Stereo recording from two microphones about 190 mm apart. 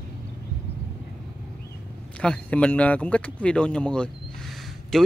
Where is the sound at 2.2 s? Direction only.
5° left (ahead or behind).